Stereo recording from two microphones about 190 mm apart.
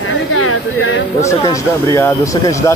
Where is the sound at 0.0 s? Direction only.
90° left.